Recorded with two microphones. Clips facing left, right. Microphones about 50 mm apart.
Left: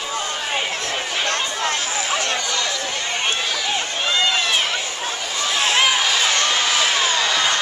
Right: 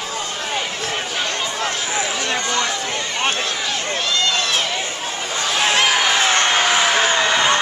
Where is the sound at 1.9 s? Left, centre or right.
Right.